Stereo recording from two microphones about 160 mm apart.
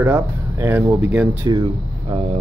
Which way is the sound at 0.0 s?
15° right (ahead or behind).